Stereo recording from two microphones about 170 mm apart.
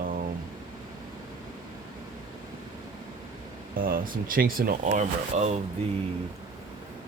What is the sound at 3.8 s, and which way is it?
Speech, 55° right (ahead or behind).